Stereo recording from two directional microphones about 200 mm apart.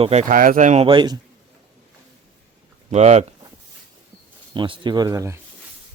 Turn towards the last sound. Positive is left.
turn(degrees=-15)  # may be behind; listen again after turning